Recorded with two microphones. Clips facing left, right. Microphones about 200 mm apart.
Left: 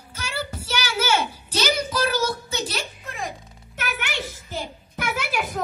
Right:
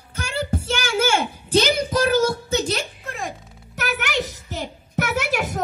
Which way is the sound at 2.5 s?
50° right (ahead or behind).